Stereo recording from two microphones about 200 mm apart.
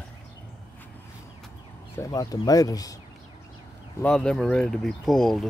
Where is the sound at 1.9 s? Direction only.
15° left (ahead or behind).